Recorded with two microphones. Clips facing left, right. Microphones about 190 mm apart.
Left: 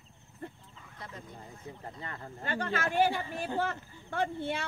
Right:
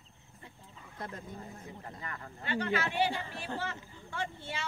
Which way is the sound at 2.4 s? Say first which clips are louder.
Right 1 dB; 45° left (ahead or behind).